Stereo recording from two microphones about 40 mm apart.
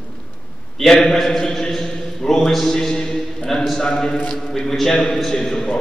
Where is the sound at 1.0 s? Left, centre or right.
Centre.